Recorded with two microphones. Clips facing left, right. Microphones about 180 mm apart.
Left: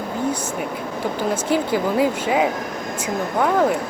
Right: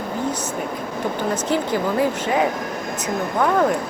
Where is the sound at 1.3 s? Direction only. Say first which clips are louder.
Left 2 dB; 10° left (ahead or behind).